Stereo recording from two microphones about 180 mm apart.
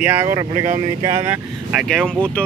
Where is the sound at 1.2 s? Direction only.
5° right (ahead or behind).